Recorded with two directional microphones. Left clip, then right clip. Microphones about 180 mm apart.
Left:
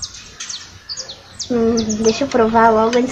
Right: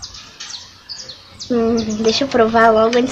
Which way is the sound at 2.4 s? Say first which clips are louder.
Right 1 dB; 15° right (ahead or behind).